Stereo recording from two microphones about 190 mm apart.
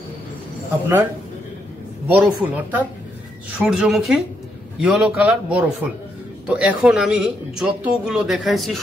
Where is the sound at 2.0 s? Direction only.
10° right (ahead or behind).